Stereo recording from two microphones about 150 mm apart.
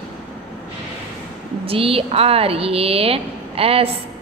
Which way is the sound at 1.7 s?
40° right (ahead or behind).